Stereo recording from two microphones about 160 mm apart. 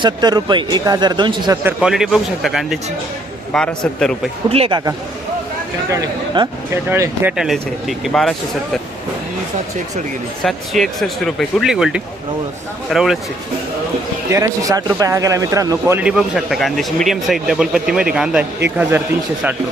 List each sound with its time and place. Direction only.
0.0 s a man's voice: 25° right (ahead or behind)
1.6 s speech: 5° right (ahead or behind)
4.4 s speech: 40° right (ahead or behind)
5.9 s a man's voice: 25° right (ahead or behind)
6.8 s speech: 15° right (ahead or behind); by 8.8 s centre (ahead or behind)
10.4 s speech: centre (ahead or behind)
14.3 s a man's voice: 20° right (ahead or behind)
16.0 s a man's voice: 5° right (ahead or behind)